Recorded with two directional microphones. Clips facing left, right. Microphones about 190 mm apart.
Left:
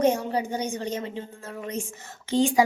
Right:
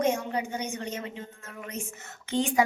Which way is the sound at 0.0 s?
35° left (ahead or behind).